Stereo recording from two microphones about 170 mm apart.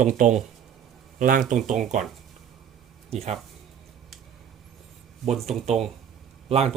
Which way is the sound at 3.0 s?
40° right (ahead or behind).